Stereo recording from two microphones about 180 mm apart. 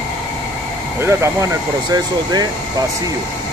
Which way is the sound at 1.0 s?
15° right (ahead or behind).